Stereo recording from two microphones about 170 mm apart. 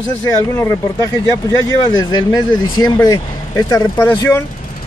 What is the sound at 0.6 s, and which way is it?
Speech, 20° left (ahead or behind).